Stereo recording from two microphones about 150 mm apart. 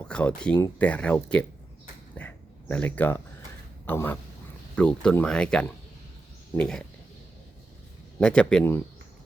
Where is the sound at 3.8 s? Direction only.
15° left (ahead or behind).